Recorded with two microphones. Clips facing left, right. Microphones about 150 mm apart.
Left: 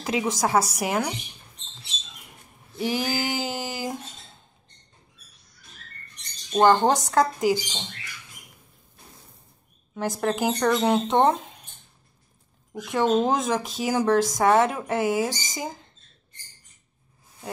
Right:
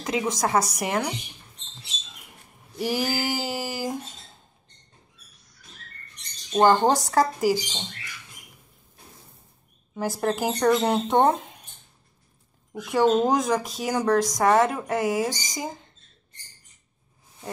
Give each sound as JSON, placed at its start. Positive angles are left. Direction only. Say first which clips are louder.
{"t": 0.0, "sound": "speech", "louder": "left 1 dB", "side_deg": 5}
{"t": 2.8, "sound": "a sound", "louder": "even", "side_deg": -5}
{"t": 6.5, "sound": "speech", "louder": "even", "side_deg": 0}
{"t": 9.9, "sound": "speech", "louder": "even", "side_deg": -5}
{"t": 12.8, "sound": "speech", "louder": "right 1 dB", "side_deg": 0}